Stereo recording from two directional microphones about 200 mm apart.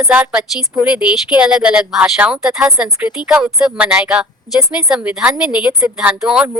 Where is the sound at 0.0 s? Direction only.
5° right (ahead or behind).